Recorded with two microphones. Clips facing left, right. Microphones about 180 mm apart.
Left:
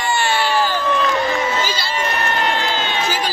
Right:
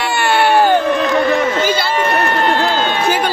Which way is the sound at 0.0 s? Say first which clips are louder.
Right 5 dB; 60° right (ahead or behind).